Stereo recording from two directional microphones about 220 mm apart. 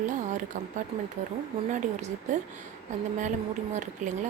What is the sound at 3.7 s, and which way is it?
Speech, 35° right (ahead or behind).